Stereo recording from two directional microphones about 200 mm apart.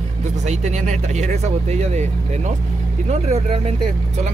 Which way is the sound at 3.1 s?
35° right (ahead or behind).